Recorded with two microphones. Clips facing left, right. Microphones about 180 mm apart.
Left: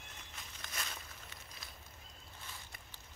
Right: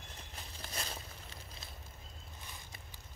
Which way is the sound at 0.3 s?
35° right (ahead or behind).